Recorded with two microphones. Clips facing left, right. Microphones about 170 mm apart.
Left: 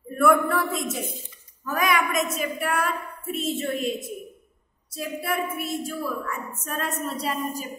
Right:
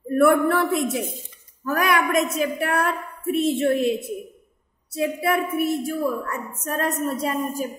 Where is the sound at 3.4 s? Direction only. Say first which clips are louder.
Right 7 dB; 65° right (ahead or behind).